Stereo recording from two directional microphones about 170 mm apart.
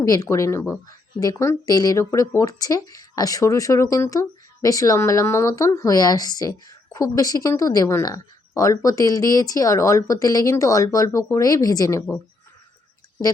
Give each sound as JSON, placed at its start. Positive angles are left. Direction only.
{"t": 0.0, "sound": "speech", "side_deg": 20}